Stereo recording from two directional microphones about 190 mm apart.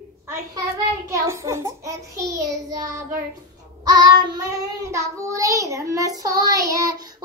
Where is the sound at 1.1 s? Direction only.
15° right (ahead or behind).